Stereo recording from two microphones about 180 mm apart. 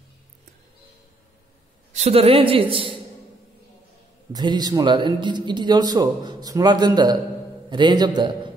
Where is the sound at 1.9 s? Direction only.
35° right (ahead or behind).